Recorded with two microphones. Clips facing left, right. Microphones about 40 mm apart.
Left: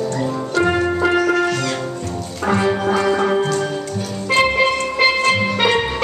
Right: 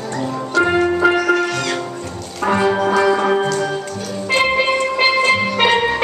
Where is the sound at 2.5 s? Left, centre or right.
Centre.